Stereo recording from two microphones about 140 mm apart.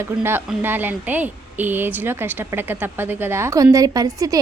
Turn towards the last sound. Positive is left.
turn(degrees=-25)  # may be behind; listen again after turning